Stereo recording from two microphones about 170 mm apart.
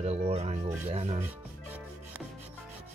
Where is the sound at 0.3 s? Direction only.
40° right (ahead or behind).